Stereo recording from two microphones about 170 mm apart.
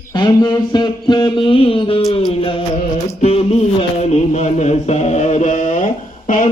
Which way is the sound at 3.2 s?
40° left (ahead or behind).